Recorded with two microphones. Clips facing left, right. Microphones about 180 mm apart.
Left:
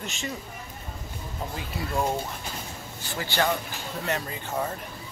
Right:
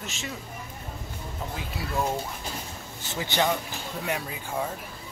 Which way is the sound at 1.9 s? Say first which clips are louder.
Left 1 dB; 15° left (ahead or behind).